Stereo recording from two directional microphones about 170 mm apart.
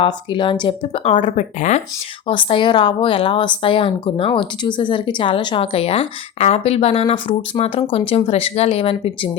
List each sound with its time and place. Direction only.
0.0 s speech: 30° left (ahead or behind)
1.5 s speech: 45° left (ahead or behind)
2.2 s speech: 30° left (ahead or behind)